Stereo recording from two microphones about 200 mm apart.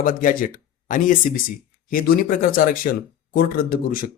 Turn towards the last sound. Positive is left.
turn(degrees=45)  # may be behind; listen again after turning